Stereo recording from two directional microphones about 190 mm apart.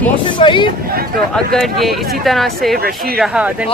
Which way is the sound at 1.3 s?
Centre (ahead or behind).